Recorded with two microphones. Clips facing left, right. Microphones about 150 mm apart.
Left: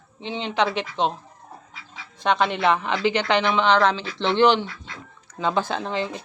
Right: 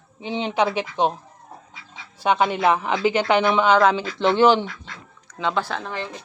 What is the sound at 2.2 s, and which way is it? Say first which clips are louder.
Speech: right 2 dB; 10° right (ahead or behind).